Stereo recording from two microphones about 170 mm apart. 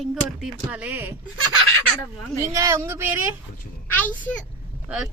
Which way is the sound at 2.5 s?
20° right (ahead or behind).